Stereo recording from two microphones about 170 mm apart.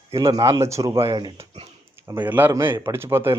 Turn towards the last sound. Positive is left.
turn(degrees=-15)  # may be behind; listen again after turning